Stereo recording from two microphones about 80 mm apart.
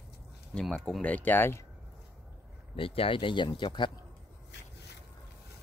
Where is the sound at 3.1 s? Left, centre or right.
Left.